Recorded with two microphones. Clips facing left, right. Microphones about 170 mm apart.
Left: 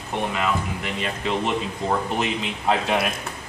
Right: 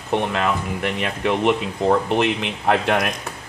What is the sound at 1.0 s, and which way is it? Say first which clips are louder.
Speech: right 5 dB; 65° right (ahead or behind).